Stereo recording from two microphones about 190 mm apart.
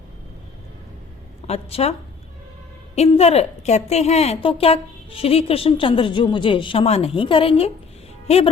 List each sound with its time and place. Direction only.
1.5 s a woman's voice: 35° left (ahead or behind)